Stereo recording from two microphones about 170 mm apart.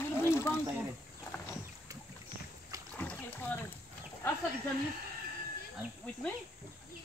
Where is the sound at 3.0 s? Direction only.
10° left (ahead or behind).